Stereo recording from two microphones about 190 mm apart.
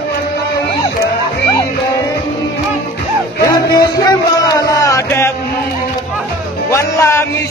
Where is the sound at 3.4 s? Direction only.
20° left (ahead or behind).